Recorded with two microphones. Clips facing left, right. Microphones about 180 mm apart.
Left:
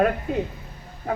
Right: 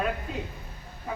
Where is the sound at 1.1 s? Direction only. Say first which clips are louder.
Left 8 dB; 65° left (ahead or behind).